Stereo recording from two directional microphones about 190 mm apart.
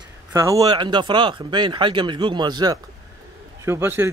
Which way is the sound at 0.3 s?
15° right (ahead or behind).